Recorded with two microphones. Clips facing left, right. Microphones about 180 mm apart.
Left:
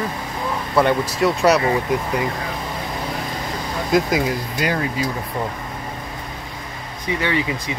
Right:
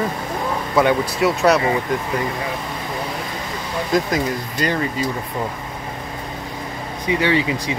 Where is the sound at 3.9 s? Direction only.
5° left (ahead or behind).